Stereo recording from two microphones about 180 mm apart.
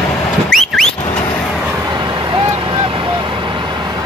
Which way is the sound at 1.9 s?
25° right (ahead or behind).